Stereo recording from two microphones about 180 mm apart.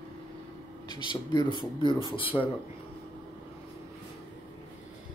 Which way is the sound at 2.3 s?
15° left (ahead or behind).